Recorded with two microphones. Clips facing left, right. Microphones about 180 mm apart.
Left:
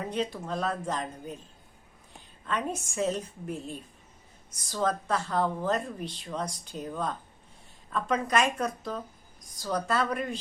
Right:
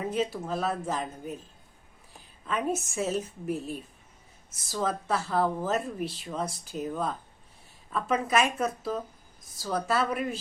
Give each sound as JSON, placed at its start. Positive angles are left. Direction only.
{"t": 0.1, "sound": "speech", "side_deg": -5}
{"t": 2.5, "sound": "speech", "side_deg": -5}